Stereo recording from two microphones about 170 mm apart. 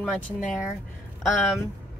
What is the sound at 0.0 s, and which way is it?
Speech, centre (ahead or behind).